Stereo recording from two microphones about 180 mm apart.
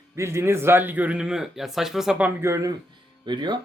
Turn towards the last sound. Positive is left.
turn(degrees=-25)  # may be behind; listen again after turning